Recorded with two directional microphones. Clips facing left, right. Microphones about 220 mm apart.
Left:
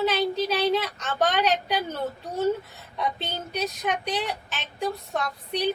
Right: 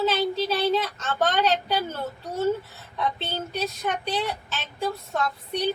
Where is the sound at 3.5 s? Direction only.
15° left (ahead or behind).